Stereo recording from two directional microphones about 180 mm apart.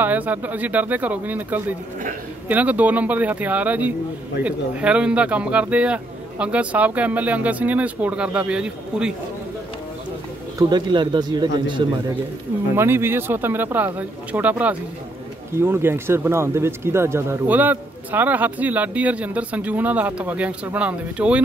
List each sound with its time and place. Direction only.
0.0 s speech: 10° right (ahead or behind)
10.7 s speech: 25° right (ahead or behind)
12.7 s speech: 15° right (ahead or behind)